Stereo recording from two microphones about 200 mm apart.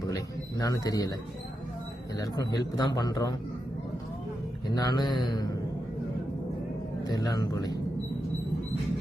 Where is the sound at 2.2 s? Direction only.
20° left (ahead or behind).